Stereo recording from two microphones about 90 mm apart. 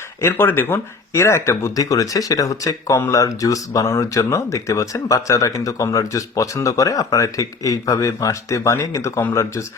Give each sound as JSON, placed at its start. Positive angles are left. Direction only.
{"t": 0.2, "sound": "speech", "side_deg": 25}